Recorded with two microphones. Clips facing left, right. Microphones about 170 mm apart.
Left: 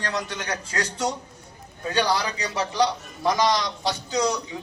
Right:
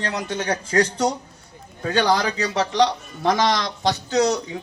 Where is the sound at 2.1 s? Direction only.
85° right.